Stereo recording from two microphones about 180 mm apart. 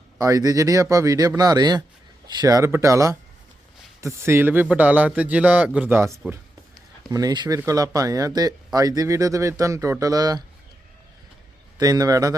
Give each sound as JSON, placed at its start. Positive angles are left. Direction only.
{"t": 0.2, "sound": "a man's voice", "side_deg": -20}
{"t": 11.8, "sound": "speech", "side_deg": -20}